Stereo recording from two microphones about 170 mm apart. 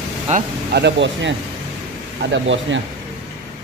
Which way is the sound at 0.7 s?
90° right.